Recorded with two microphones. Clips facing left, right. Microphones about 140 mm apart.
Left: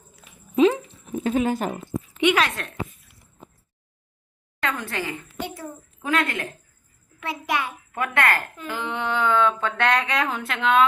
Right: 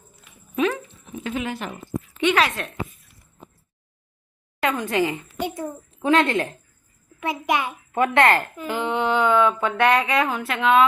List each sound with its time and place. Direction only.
0.5 s dog: 25° left (ahead or behind)
1.1 s speech: 40° left (ahead or behind)
1.7 s a sound: 20° left (ahead or behind)
2.3 s a woman's voice: centre (ahead or behind)
4.6 s a woman's voice: 15° right (ahead or behind)